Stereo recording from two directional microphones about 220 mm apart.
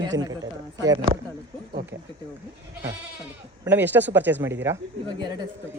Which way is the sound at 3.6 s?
10° right (ahead or behind).